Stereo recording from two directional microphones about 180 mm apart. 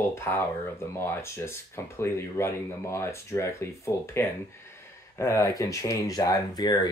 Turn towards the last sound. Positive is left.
turn(degrees=25)  # may be behind; listen again after turning